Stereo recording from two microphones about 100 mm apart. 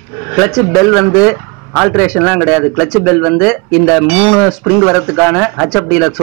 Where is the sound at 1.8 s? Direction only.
Centre (ahead or behind).